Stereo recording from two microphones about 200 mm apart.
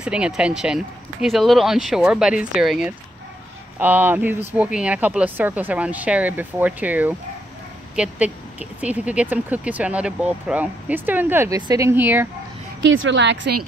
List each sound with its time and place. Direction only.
0.0 s speech: 5° right (ahead or behind)
12.8 s a woman's voice: 75° right (ahead or behind)